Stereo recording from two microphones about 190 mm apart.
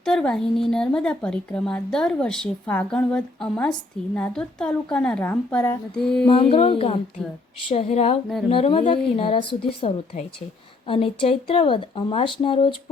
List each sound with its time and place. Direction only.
0.0 s a woman's voice: 5° left (ahead or behind)
6.2 s speech: 25° left (ahead or behind)